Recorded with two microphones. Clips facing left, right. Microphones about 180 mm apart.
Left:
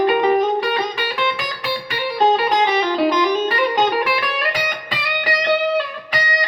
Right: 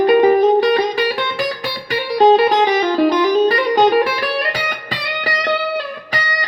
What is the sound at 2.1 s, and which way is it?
Music, 40° right (ahead or behind).